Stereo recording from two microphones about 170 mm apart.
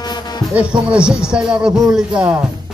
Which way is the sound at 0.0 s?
25° left (ahead or behind).